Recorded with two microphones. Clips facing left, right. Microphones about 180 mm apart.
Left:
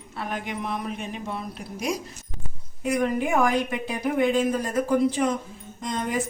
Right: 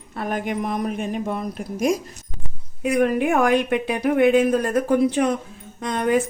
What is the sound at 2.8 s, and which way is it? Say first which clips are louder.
Speech: right 5 dB; 60° right (ahead or behind).